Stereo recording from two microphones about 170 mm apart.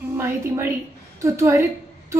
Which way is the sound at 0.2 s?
15° right (ahead or behind).